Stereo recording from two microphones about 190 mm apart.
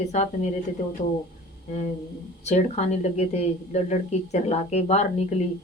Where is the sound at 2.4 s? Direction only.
35° left (ahead or behind).